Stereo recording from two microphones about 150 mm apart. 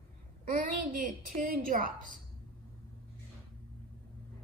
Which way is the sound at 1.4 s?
70° right (ahead or behind).